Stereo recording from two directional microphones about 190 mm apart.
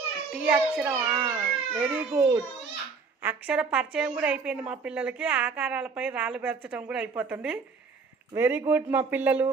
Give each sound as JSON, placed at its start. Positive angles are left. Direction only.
{"t": 0.4, "sound": "a woman's voice", "side_deg": -5}